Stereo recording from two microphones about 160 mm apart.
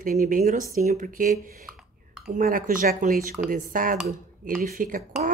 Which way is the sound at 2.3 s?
60° right (ahead or behind).